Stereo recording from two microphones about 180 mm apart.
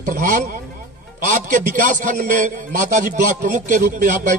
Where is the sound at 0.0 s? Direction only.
50° right (ahead or behind).